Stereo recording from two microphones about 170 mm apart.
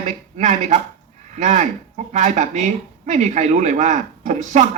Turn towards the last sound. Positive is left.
turn(degrees=-45)  # may be behind; listen again after turning